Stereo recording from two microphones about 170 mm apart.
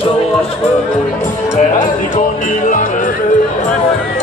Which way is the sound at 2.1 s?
50° left (ahead or behind).